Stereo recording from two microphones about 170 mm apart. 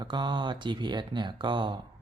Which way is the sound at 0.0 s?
25° right (ahead or behind).